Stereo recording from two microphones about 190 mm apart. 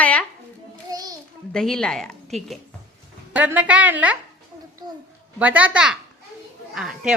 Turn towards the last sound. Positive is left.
turn(degrees=-5)  # may be behind; listen again after turning